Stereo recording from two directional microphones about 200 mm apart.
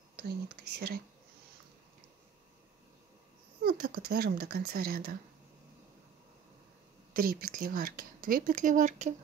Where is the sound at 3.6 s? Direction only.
45° right (ahead or behind).